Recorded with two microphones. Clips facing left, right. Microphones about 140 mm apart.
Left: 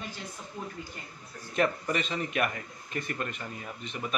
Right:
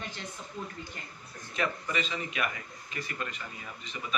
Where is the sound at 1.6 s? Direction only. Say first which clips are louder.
Left 4 dB; 50° left (ahead or behind).